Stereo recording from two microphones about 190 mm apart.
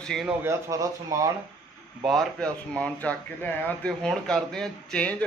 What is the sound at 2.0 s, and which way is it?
Speech, centre (ahead or behind).